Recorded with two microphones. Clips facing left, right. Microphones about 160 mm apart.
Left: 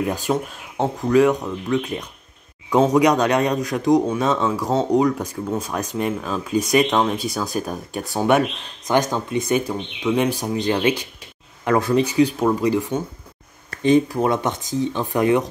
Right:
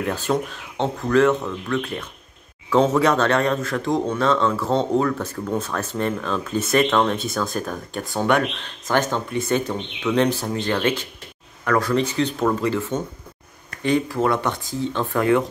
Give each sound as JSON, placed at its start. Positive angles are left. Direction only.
{"t": 0.0, "sound": "speech", "side_deg": 10}